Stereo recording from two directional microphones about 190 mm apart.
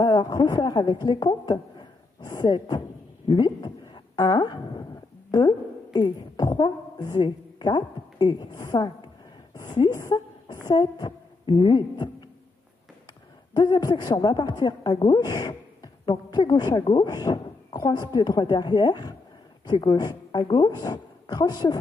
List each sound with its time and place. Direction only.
0.0 s a woman's voice: 20° left (ahead or behind)
5.9 s a woman's voice: 20° left (ahead or behind)
13.5 s a woman's voice: 20° left (ahead or behind)